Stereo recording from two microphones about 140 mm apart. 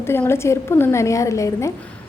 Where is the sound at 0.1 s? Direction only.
15° left (ahead or behind).